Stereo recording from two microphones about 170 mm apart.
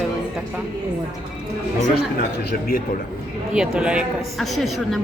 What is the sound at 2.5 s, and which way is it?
Speech, 60° left (ahead or behind).